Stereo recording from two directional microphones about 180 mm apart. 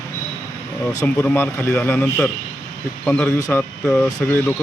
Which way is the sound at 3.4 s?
15° left (ahead or behind).